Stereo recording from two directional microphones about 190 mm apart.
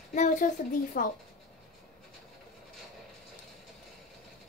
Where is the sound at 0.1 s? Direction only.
40° left (ahead or behind).